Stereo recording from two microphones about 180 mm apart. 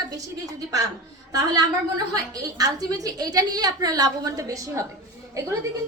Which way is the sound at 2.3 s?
20° right (ahead or behind).